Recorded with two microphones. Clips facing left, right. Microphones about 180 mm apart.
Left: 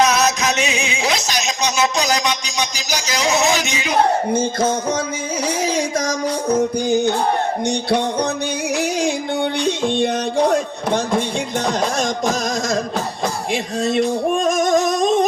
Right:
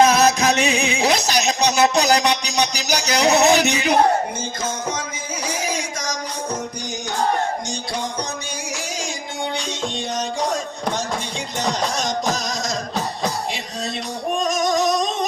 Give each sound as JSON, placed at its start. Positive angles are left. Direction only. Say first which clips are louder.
{"t": 0.0, "sound": "music", "louder": "right 2 dB", "side_deg": -55}
{"t": 7.7, "sound": "music", "louder": "left 8 dB", "side_deg": 65}